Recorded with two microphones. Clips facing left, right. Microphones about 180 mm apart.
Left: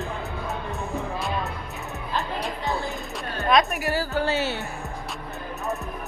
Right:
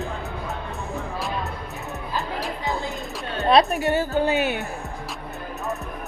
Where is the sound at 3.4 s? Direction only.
30° right (ahead or behind); by 4.6 s 15° right (ahead or behind).